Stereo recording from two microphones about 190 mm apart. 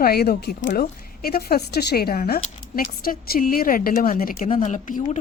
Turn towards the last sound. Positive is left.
turn(degrees=40)  # may be behind; listen again after turning